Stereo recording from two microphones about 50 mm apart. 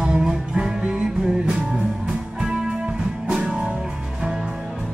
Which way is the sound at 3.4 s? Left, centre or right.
Centre.